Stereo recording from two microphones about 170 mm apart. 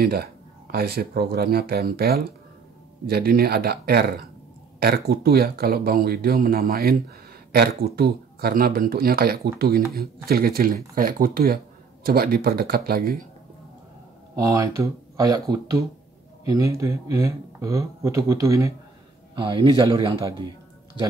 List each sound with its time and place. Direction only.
0.0 s speech: 65° right (ahead or behind)
14.3 s speech: 20° right (ahead or behind)